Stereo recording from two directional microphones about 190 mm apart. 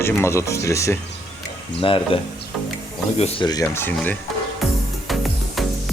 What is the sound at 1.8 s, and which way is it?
Speech, 25° left (ahead or behind).